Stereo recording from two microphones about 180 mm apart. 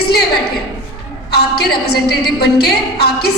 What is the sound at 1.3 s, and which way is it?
A woman's voice, 65° left (ahead or behind).